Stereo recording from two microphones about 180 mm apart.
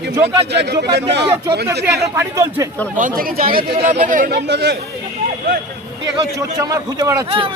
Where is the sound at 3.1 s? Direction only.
55° right (ahead or behind).